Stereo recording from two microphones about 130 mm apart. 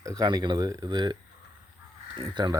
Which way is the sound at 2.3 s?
30° right (ahead or behind).